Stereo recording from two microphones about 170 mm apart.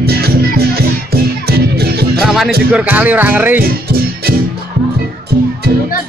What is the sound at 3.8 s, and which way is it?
Music, 65° right (ahead or behind).